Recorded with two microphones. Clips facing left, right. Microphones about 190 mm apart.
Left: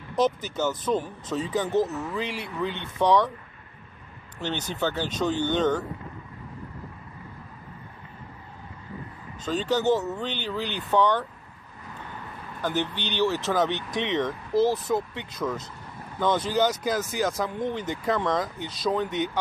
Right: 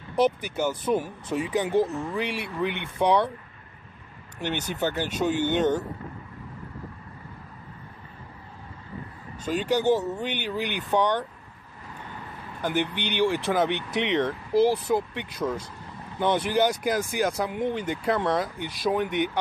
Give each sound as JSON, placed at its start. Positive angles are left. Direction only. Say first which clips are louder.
{"t": 0.1, "sound": "speech", "louder": "right 1 dB", "side_deg": -10}
{"t": 4.4, "sound": "speech", "louder": "right 1 dB", "side_deg": -10}
{"t": 9.4, "sound": "speech", "louder": "right 1 dB", "side_deg": -10}
{"t": 12.6, "sound": "speech", "louder": "right 1 dB", "side_deg": -15}